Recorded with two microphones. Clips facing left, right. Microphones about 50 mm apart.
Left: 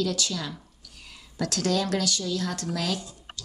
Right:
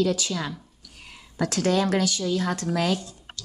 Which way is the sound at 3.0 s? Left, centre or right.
Centre.